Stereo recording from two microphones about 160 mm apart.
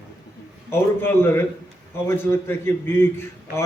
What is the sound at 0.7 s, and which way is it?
A man's voice, 15° left (ahead or behind).